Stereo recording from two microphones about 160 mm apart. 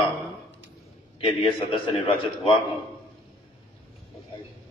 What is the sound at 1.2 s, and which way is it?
Speech, 35° left (ahead or behind).